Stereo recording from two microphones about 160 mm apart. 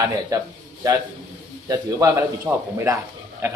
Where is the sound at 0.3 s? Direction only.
20° right (ahead or behind).